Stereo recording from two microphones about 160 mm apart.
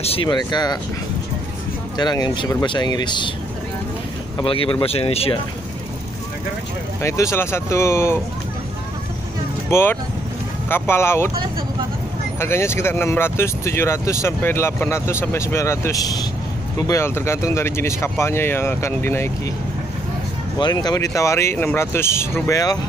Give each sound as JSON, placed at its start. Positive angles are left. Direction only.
{"t": 0.0, "sound": "speech", "side_deg": 35}
{"t": 2.0, "sound": "speech", "side_deg": 25}
{"t": 4.4, "sound": "speech", "side_deg": 30}
{"t": 7.0, "sound": "speech", "side_deg": 15}
{"t": 9.7, "sound": "speech", "side_deg": 15}
{"t": 12.4, "sound": "speech", "side_deg": 15}
{"t": 20.5, "sound": "speech", "side_deg": 25}